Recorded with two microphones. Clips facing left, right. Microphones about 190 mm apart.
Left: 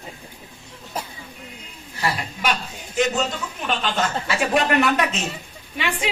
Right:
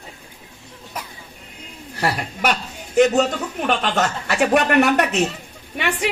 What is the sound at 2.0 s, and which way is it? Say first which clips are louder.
A man's voice: right 3 dB; 65° right (ahead or behind).